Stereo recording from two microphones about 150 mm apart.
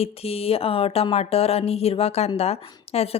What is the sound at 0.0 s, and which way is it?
Speech, 40° left (ahead or behind).